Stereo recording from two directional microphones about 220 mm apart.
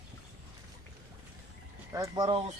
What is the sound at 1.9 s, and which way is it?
Speech, 15° right (ahead or behind).